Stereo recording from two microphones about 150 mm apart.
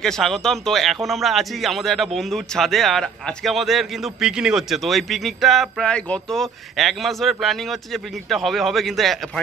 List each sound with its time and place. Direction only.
0.0 s a man's voice: 5° left (ahead or behind)